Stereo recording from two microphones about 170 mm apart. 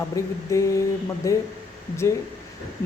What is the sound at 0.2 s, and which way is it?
A woman's voice, 20° left (ahead or behind).